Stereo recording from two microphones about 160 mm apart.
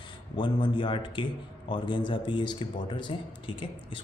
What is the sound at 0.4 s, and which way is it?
Speech, 30° left (ahead or behind).